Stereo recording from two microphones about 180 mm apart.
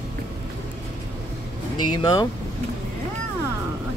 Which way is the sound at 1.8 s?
25° left (ahead or behind).